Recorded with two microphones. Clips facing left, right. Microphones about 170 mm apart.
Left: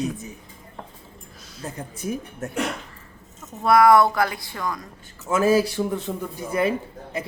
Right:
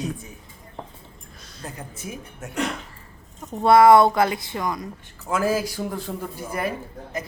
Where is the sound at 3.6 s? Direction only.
25° right (ahead or behind).